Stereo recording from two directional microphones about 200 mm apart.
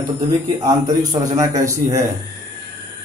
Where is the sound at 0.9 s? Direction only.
20° right (ahead or behind).